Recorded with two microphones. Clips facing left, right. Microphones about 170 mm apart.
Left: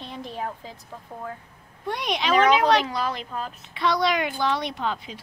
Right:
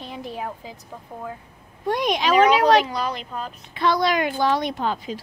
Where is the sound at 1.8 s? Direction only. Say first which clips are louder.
Right 5 dB; 45° right (ahead or behind).